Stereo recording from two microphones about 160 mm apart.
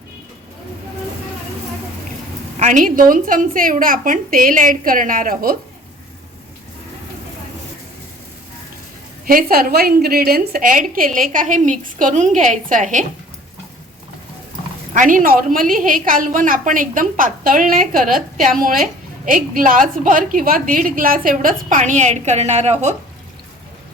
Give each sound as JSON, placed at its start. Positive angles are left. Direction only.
{"t": 2.6, "sound": "a woman's voice", "side_deg": -50}
{"t": 9.2, "sound": "a woman's voice", "side_deg": -65}
{"t": 14.9, "sound": "a woman's voice", "side_deg": -55}